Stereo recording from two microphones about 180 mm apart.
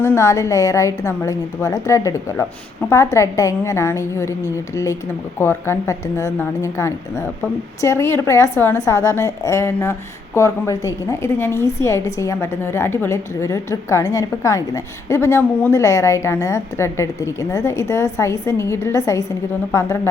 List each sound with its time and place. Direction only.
0.0 s a woman's voice: 15° left (ahead or behind)
5.4 s a woman's voice: 15° left (ahead or behind)